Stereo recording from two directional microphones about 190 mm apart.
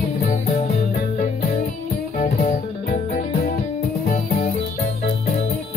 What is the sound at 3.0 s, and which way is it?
Music, 50° left (ahead or behind).